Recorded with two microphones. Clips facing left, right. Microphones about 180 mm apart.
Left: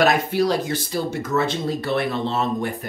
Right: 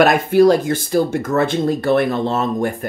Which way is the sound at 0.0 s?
50° right (ahead or behind).